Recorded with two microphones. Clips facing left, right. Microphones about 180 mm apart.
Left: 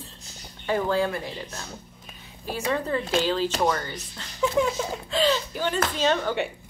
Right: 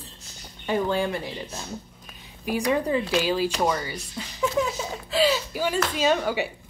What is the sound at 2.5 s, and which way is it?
Speech, 15° right (ahead or behind).